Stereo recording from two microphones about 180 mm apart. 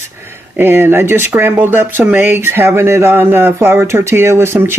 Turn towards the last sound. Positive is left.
turn(degrees=-10)  # may be behind; listen again after turning